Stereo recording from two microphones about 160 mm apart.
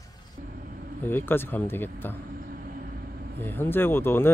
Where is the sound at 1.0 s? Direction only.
15° left (ahead or behind).